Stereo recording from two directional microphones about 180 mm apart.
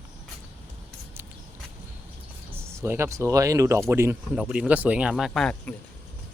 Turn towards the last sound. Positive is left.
turn(degrees=0)  # may be behind; listen again after turning